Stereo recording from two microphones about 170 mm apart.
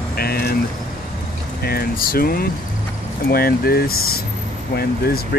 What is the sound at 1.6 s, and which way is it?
Speech, 65° left (ahead or behind).